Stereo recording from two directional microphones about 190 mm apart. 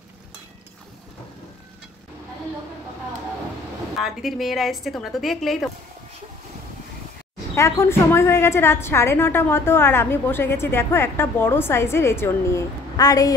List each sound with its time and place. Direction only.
4.0 s a woman's voice: centre (ahead or behind)
7.5 s a woman's voice: 15° left (ahead or behind)